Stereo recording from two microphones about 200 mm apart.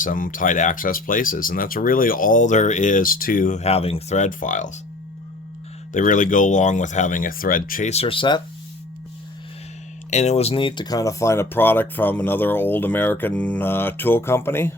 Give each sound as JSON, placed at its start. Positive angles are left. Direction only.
{"t": 0.0, "sound": "speech", "side_deg": 40}
{"t": 5.9, "sound": "speech", "side_deg": 40}
{"t": 10.1, "sound": "speech", "side_deg": 35}